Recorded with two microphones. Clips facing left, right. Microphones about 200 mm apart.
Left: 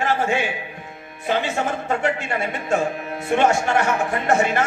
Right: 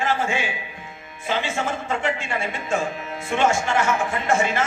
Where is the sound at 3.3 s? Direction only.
60° left (ahead or behind).